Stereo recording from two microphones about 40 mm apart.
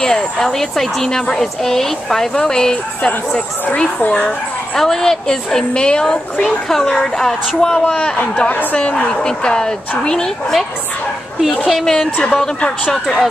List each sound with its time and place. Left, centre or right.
0.0 s speech: centre
3.1 s speech: left
4.7 s speech: centre
6.4 s speech: centre
11.8 s speech: centre
12.5 s speech: left
12.9 s speech: centre